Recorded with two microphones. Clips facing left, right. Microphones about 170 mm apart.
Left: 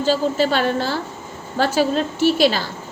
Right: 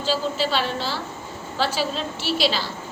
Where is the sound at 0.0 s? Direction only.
50° left (ahead or behind).